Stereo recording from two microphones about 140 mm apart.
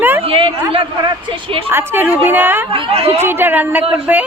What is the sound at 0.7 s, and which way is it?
Speech, 40° right (ahead or behind).